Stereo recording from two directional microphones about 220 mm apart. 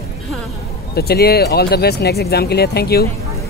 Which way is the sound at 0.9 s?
45° left (ahead or behind).